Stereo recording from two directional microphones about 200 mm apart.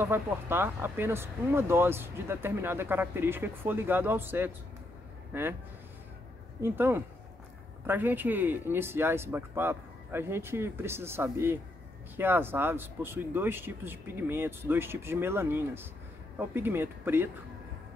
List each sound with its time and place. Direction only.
0.0 s speech: 10° right (ahead or behind)
6.6 s speech: 10° right (ahead or behind)